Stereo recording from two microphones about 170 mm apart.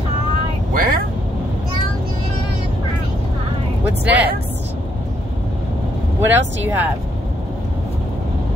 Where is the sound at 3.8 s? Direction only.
10° right (ahead or behind).